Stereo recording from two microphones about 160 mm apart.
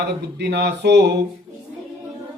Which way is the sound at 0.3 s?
90° right.